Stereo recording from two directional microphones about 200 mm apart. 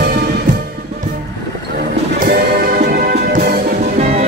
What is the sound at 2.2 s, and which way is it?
Music, 50° right (ahead or behind).